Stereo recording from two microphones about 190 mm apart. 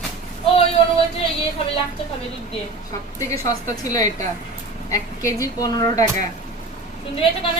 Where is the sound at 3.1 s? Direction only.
15° left (ahead or behind).